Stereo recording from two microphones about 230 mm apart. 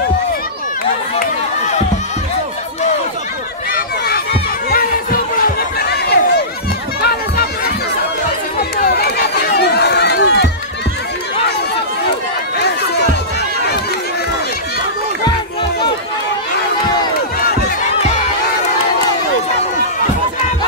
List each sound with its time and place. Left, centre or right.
4.6 s chatter: left
7.0 s music: left
8.8 s run: left
17.4 s music: left